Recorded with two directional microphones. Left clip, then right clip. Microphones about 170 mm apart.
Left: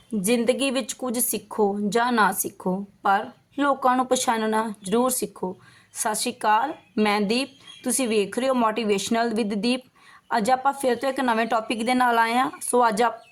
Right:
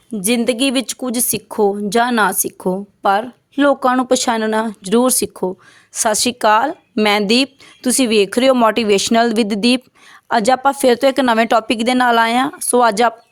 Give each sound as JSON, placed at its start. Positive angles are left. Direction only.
{"t": 0.2, "sound": "a woman's voice", "side_deg": -50}